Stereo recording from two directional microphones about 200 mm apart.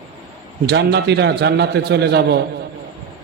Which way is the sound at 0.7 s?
60° right (ahead or behind).